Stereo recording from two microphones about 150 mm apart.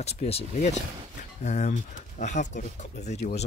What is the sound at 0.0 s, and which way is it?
Speech, 45° left (ahead or behind).